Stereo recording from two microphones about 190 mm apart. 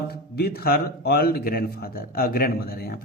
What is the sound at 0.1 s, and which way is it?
A man's voice, 55° left (ahead or behind).